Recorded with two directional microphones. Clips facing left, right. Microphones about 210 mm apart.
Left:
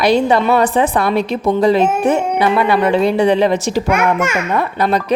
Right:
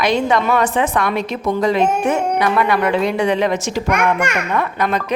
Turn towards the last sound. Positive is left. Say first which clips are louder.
# left 4 dB
turn(degrees=35)  # may be behind; listen again after turning